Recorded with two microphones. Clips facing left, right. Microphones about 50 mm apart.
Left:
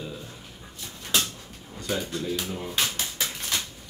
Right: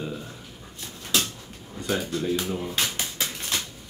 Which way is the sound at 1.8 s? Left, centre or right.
Right.